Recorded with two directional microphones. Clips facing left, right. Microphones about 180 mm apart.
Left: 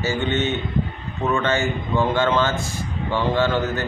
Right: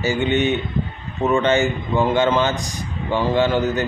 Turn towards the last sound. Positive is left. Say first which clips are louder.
# right 3 dB
turn(degrees=-15)  # may be behind; listen again after turning